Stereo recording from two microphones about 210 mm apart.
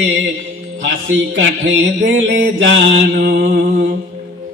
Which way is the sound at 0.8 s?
60° right (ahead or behind).